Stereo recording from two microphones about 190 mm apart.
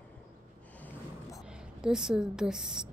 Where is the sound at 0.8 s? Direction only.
15° left (ahead or behind).